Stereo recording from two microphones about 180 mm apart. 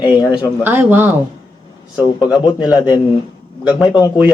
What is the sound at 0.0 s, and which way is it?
Speech, 25° left (ahead or behind).